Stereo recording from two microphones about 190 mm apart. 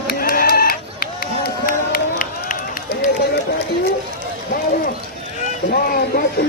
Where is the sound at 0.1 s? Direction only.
50° left (ahead or behind).